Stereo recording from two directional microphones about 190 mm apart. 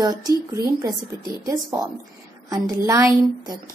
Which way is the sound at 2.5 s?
15° right (ahead or behind).